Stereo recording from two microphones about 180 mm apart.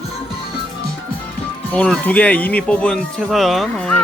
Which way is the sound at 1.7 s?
5° left (ahead or behind).